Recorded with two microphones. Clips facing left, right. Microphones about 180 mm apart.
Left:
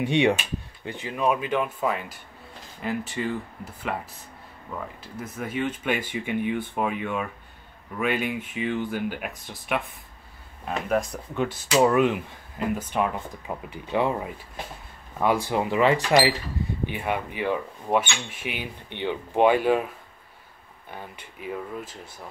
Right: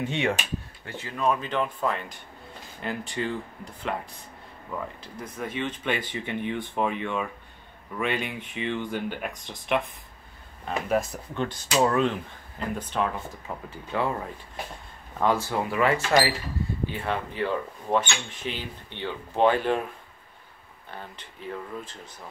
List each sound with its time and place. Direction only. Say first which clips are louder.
0.0 s speech: left 5 dB; 15° left (ahead or behind)
5.0 s speech: left 1 dB; 5° left (ahead or behind)
11.3 s speech: left 3 dB; 10° left (ahead or behind)
20.9 s speech: left 1 dB; 10° left (ahead or behind)